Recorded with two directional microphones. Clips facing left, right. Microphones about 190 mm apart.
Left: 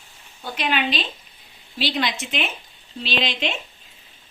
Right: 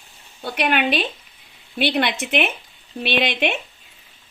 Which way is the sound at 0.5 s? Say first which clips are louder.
Right 4 dB; 60° right (ahead or behind).